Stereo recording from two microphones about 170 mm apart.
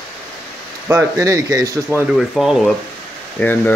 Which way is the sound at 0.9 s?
20° right (ahead or behind).